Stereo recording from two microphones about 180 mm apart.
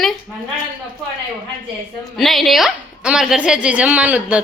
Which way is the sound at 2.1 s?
Centre (ahead or behind).